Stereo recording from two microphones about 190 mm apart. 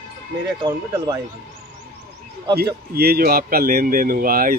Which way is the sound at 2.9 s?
55° right (ahead or behind).